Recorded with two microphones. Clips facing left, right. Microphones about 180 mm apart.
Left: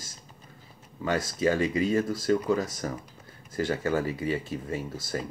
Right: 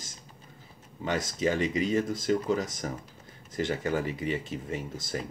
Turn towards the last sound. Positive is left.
turn(degrees=-20)  # may be behind; listen again after turning